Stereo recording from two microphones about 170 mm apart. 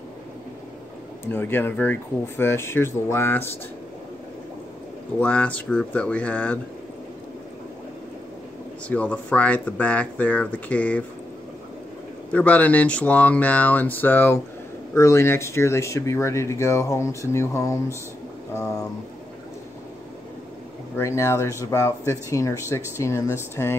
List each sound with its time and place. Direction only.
1.3 s speech: 10° left (ahead or behind)
5.2 s speech: 5° left (ahead or behind)
8.8 s speech: 5° left (ahead or behind)
12.3 s speech: 10° left (ahead or behind)
20.9 s speech: 15° left (ahead or behind)